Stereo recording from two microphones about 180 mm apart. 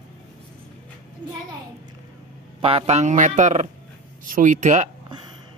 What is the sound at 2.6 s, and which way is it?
Speech, 30° right (ahead or behind).